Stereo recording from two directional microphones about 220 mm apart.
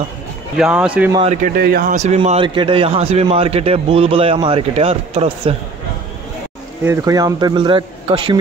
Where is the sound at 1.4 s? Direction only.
45° right (ahead or behind); by 5.5 s 25° right (ahead or behind).